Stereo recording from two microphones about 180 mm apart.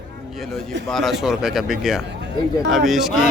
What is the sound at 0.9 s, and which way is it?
A man's voice, centre (ahead or behind).